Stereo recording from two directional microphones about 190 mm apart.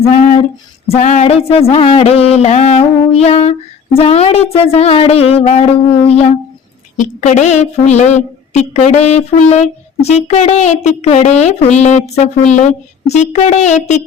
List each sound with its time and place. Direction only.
0.9 s speech: 35° left (ahead or behind)